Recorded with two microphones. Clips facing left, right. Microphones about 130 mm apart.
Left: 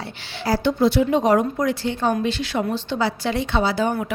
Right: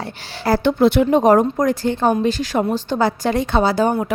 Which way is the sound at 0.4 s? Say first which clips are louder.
Right 4 dB; 55° right (ahead or behind).